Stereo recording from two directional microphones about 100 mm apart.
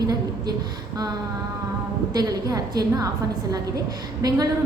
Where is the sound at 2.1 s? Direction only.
40° right (ahead or behind).